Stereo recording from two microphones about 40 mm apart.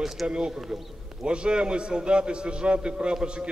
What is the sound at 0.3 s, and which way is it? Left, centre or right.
A man's voice, centre.